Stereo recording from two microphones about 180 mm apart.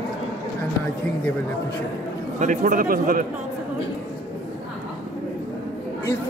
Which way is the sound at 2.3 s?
45° right (ahead or behind).